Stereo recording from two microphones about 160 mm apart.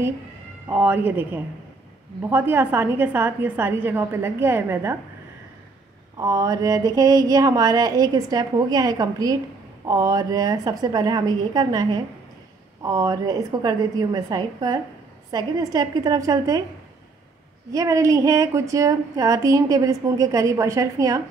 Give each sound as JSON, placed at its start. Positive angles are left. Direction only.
{"t": 0.7, "sound": "a woman's voice", "side_deg": -10}
{"t": 6.1, "sound": "speech", "side_deg": -20}
{"t": 17.7, "sound": "speech", "side_deg": -20}